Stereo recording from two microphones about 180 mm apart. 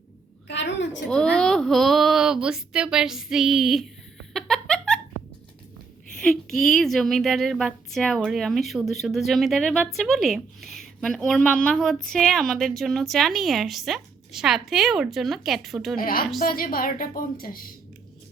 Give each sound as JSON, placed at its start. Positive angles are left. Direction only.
{"t": 0.4, "sound": "a sound", "side_deg": 80}
{"t": 1.0, "sound": "a woman's voice", "side_deg": 5}
{"t": 4.4, "sound": "giggle", "side_deg": 0}
{"t": 6.1, "sound": "a woman's voice", "side_deg": 0}
{"t": 16.0, "sound": "a woman's voice", "side_deg": 50}